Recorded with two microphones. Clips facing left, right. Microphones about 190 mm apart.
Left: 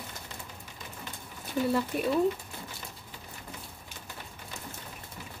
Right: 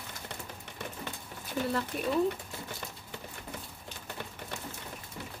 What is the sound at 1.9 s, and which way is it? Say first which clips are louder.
Speech: left 4 dB; 5° left (ahead or behind).